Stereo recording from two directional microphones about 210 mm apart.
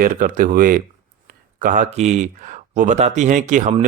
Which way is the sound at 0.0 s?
40° right (ahead or behind).